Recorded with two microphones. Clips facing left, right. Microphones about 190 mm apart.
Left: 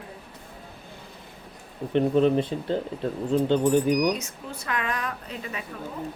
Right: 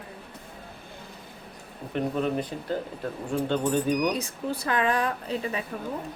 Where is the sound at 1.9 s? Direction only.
30° left (ahead or behind).